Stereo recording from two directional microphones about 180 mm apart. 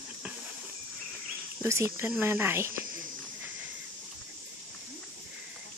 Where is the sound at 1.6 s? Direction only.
15° right (ahead or behind).